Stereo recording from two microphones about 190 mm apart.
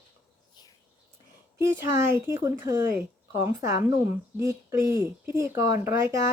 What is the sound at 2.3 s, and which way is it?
A woman's voice, 10° right (ahead or behind).